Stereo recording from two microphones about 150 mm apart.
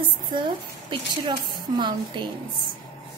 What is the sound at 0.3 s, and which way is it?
A woman's voice, 30° right (ahead or behind).